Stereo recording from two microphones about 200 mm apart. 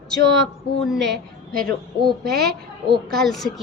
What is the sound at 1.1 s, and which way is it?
Speech, 45° right (ahead or behind).